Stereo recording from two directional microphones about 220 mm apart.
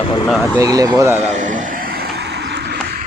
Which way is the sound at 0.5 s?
15° right (ahead or behind).